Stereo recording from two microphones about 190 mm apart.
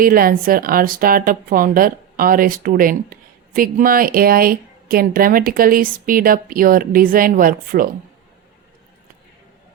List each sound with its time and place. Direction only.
0.0 s a woman's voice: 50° right (ahead or behind)